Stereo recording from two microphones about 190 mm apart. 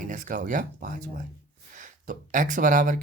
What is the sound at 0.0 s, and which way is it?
Speech, 45° right (ahead or behind).